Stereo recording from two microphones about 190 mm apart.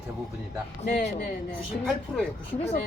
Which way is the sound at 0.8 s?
40° left (ahead or behind).